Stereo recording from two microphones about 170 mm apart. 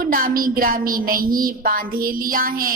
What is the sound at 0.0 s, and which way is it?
A woman's voice, 55° right (ahead or behind).